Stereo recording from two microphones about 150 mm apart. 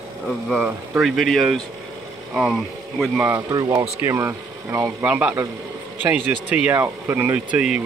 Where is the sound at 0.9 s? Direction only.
Centre (ahead or behind).